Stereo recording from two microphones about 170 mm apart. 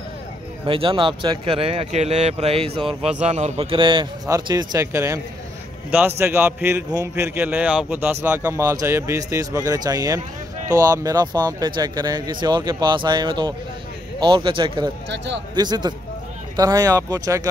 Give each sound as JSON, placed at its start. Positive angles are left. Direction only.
{"t": 0.7, "sound": "a man's voice", "side_deg": -30}